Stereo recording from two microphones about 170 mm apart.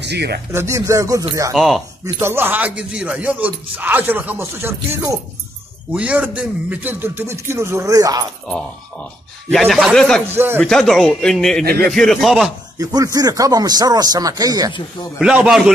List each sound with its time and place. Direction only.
0.0 s speech: 80° right
0.5 s speech: 15° right (ahead or behind)
1.5 s speech: centre (ahead or behind)
2.1 s speech: 15° right (ahead or behind)
9.5 s speech: centre (ahead or behind)
10.2 s speech: 15° right (ahead or behind)
10.6 s speech: centre (ahead or behind)
11.6 s speech: 65° right (ahead or behind)
11.9 s speech: 5° left (ahead or behind)
12.7 s speech: 20° right (ahead or behind)
15.1 s speech: 5° right (ahead or behind)